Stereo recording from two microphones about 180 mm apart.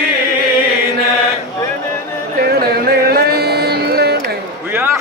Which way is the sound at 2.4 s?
60° right (ahead or behind).